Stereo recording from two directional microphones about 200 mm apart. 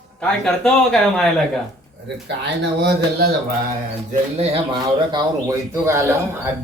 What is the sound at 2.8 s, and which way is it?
Speech, 55° right (ahead or behind).